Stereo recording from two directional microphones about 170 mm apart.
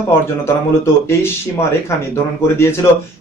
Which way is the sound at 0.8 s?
15° left (ahead or behind).